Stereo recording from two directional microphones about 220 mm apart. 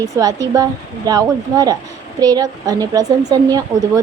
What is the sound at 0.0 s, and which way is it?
Speech, 15° right (ahead or behind).